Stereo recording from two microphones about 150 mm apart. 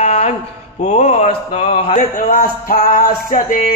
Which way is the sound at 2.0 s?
55° left (ahead or behind).